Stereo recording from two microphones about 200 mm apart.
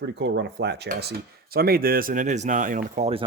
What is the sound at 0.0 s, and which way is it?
Speech, 60° right (ahead or behind).